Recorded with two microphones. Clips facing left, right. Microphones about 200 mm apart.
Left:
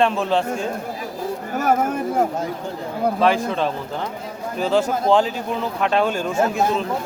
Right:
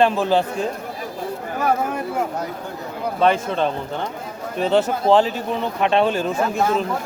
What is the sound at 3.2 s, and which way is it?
Speech, centre (ahead or behind).